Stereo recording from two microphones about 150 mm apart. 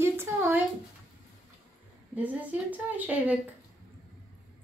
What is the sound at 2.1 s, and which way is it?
A woman's voice, 10° right (ahead or behind).